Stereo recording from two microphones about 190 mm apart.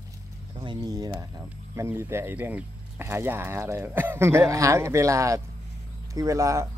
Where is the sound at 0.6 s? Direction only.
20° right (ahead or behind).